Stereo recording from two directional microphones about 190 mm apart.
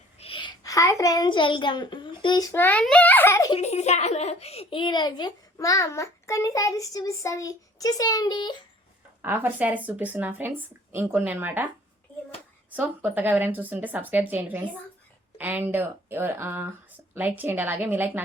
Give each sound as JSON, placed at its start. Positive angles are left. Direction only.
{"t": 0.2, "sound": "a child's voice", "side_deg": 25}
{"t": 3.5, "sound": "a child's voice", "side_deg": 35}
{"t": 9.2, "sound": "speech", "side_deg": -10}
{"t": 12.7, "sound": "speech", "side_deg": -10}